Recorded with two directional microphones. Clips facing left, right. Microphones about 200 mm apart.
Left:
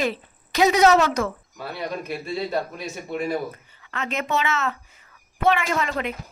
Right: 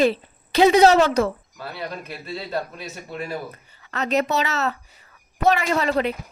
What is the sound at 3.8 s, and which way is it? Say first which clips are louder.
A woman's voice: right 7 dB; 40° right (ahead or behind).